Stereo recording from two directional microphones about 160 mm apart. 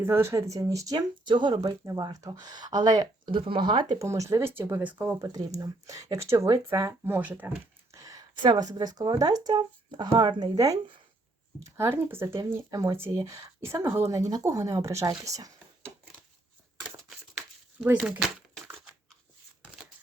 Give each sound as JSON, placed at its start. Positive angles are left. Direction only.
{"t": 0.0, "sound": "speech", "side_deg": -15}
{"t": 5.2, "sound": "speech", "side_deg": -20}
{"t": 17.0, "sound": "crumpling", "side_deg": -5}
{"t": 18.2, "sound": "crushing", "side_deg": 0}